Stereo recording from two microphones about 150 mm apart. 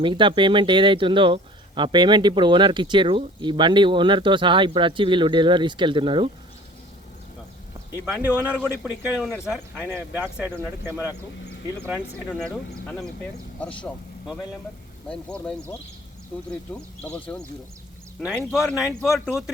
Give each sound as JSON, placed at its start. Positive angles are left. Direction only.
{"t": 0.0, "sound": "speech", "side_deg": -35}
{"t": 8.0, "sound": "speech", "side_deg": -10}
{"t": 12.4, "sound": "speech", "side_deg": 5}
{"t": 15.1, "sound": "speech", "side_deg": 5}
{"t": 18.2, "sound": "speech", "side_deg": -10}